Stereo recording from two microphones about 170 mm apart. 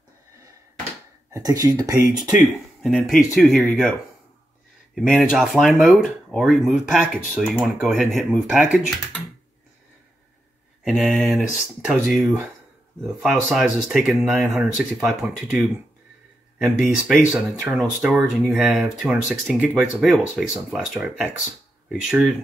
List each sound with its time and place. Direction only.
1.3 s speech: 20° right (ahead or behind)
2.8 s speech: centre (ahead or behind)
4.9 s speech: centre (ahead or behind)
10.8 s speech: centre (ahead or behind)